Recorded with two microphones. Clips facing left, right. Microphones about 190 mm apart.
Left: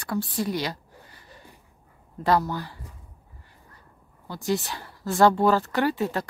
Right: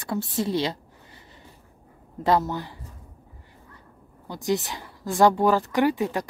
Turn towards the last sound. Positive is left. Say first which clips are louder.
# right 2 dB
turn(degrees=-15)  # may be behind; listen again after turning